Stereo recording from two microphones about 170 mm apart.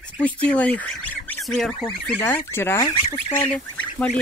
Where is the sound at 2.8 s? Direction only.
25° left (ahead or behind).